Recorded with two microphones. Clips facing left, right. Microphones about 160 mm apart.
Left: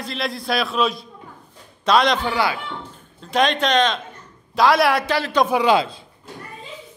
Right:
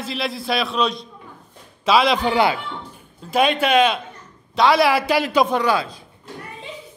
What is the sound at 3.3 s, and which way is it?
A man's voice, 5° right (ahead or behind).